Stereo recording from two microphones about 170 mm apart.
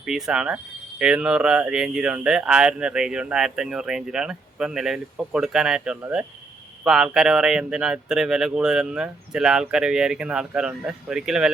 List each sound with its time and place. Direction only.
0.0 s speech: centre (ahead or behind)